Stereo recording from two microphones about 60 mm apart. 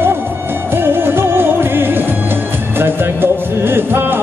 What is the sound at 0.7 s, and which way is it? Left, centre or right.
Music, right.